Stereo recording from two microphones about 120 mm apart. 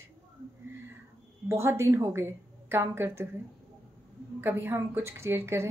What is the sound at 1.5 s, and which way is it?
A woman's voice, 25° right (ahead or behind).